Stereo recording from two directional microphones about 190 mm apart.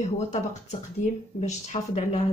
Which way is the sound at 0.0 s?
40° left (ahead or behind).